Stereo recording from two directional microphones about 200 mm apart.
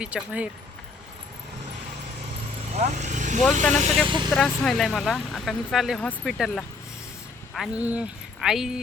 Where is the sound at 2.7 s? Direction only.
35° right (ahead or behind).